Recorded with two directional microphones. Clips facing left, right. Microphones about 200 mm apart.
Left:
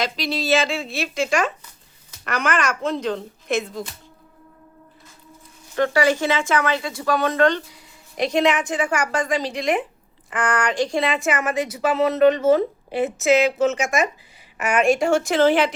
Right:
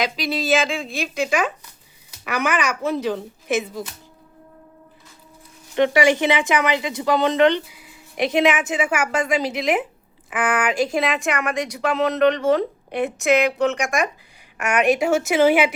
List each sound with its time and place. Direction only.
0.0 s speech: centre (ahead or behind)
5.7 s a woman's voice: 20° right (ahead or behind)
7.7 s a woman's voice: 5° right (ahead or behind)